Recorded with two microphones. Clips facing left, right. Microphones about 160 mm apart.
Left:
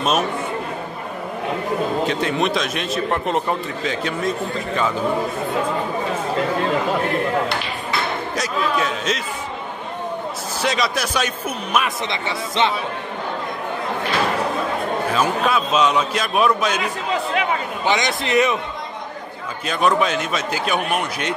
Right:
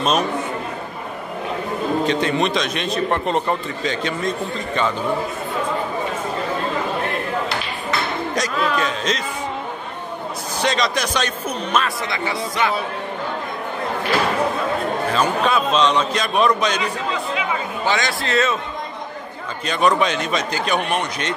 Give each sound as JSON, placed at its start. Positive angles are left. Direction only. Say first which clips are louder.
{"t": 2.0, "sound": "a man's voice", "louder": "right 1 dB", "side_deg": 0}
{"t": 8.4, "sound": "a man's voice", "louder": "right 1 dB", "side_deg": 5}
{"t": 10.6, "sound": "a man's voice", "louder": "right 1 dB", "side_deg": 5}
{"t": 12.1, "sound": "a man's voice", "louder": "right 1 dB", "side_deg": 25}
{"t": 15.1, "sound": "a man's voice", "louder": "right 1 dB", "side_deg": 5}
{"t": 17.8, "sound": "a man's voice", "louder": "left 2 dB", "side_deg": 20}
{"t": 19.6, "sound": "a man's voice", "louder": "right 1 dB", "side_deg": 0}